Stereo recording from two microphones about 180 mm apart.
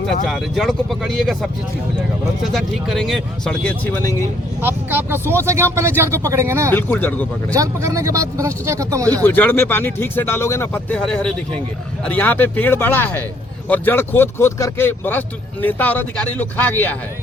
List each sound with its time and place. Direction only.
0.3 s speech: centre (ahead or behind)
2.5 s speech: centre (ahead or behind)
4.6 s speech: 10° right (ahead or behind)
6.7 s speech: 10° left (ahead or behind)
7.5 s speech: 20° right (ahead or behind)
9.2 s speech: 10° left (ahead or behind)